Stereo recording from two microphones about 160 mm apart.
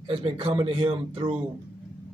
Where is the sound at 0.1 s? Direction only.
35° right (ahead or behind).